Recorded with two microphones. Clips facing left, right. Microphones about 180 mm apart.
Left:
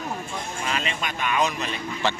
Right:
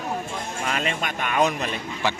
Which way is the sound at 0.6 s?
50° right (ahead or behind).